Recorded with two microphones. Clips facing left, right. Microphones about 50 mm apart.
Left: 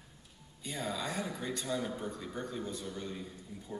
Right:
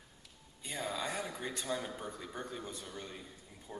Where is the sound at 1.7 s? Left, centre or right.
Centre.